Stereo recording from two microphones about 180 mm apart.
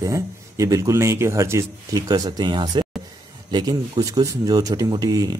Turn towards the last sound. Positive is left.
turn(degrees=-20)  # may be behind; listen again after turning